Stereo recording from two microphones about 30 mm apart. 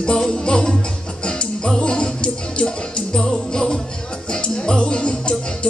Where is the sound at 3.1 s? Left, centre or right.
Centre.